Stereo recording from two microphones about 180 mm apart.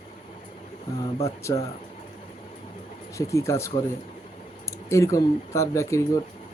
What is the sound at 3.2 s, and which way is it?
Speech, 15° left (ahead or behind).